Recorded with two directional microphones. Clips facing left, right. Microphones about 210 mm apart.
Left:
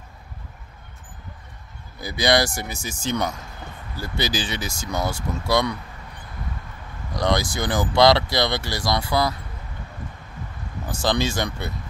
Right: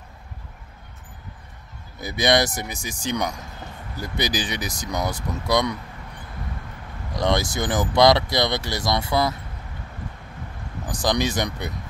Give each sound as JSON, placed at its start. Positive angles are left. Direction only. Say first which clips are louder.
{"t": 2.0, "sound": "speech", "louder": "even", "side_deg": -20}
{"t": 7.2, "sound": "speech", "louder": "even", "side_deg": -25}
{"t": 10.9, "sound": "speech", "louder": "even", "side_deg": -15}